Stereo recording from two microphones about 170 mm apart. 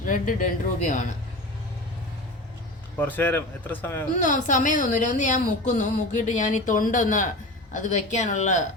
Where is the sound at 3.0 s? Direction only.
10° left (ahead or behind).